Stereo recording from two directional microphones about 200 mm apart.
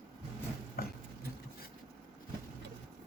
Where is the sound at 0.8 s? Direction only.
50° left (ahead or behind).